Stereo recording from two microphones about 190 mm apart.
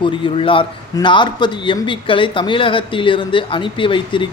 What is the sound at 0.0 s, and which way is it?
A man's voice, 25° left (ahead or behind).